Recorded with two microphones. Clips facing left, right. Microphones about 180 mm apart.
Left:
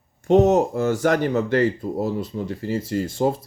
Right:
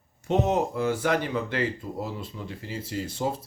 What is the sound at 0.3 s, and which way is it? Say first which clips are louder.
Speech: left 8 dB; 45° left (ahead or behind).